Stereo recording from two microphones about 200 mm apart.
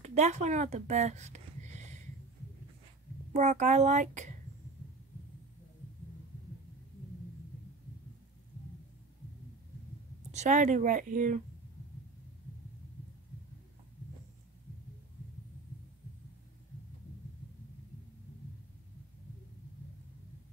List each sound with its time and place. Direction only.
0.0 s speech: 35° right (ahead or behind)
3.3 s speech: 35° right (ahead or behind)
10.3 s speech: 35° right (ahead or behind)